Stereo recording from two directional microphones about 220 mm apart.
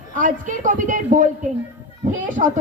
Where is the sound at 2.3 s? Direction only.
35° right (ahead or behind).